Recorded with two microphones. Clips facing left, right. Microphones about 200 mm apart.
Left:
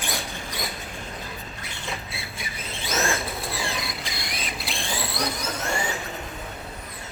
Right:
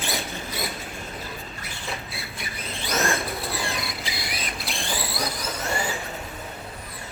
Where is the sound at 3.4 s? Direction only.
Centre (ahead or behind).